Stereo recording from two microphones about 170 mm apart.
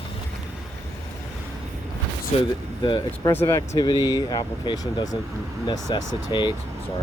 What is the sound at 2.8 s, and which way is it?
Speech, 25° left (ahead or behind).